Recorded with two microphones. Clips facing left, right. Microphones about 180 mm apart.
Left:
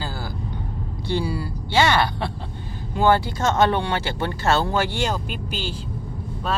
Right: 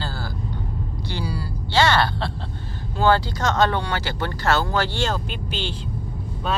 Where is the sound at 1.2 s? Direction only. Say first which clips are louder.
Left 2 dB; 25° left (ahead or behind).